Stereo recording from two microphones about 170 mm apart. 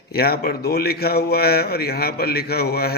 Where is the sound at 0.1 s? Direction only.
65° left (ahead or behind).